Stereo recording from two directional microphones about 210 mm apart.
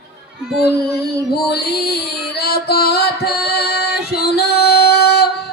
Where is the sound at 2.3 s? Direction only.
50° left (ahead or behind).